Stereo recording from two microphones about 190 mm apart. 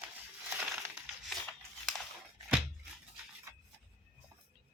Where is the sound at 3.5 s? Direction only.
15° right (ahead or behind).